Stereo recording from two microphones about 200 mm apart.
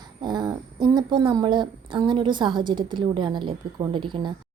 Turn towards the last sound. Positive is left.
turn(degrees=-25)  # may be behind; listen again after turning